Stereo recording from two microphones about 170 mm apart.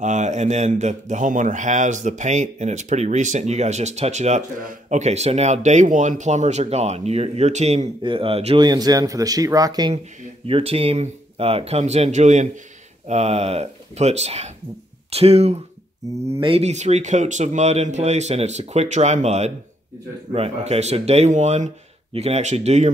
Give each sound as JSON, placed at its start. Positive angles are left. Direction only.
{"t": 0.0, "sound": "a man's voice", "side_deg": -45}
{"t": 8.6, "sound": "speech", "side_deg": -20}
{"t": 10.4, "sound": "speech", "side_deg": -35}